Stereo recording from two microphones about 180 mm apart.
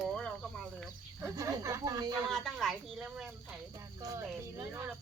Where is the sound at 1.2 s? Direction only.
15° right (ahead or behind).